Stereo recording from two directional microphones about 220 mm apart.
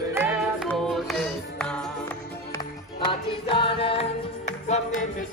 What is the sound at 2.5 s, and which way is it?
Music, 20° left (ahead or behind).